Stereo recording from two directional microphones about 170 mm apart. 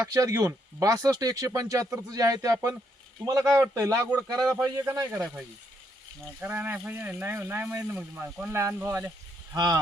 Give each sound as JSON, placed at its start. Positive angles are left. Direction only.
{"t": 0.0, "sound": "speech", "side_deg": -20}
{"t": 6.4, "sound": "speech", "side_deg": -10}